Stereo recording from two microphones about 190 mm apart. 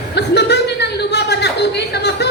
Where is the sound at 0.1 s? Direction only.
60° left (ahead or behind).